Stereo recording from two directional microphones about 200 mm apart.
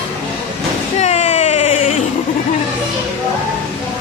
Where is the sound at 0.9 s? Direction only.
35° left (ahead or behind).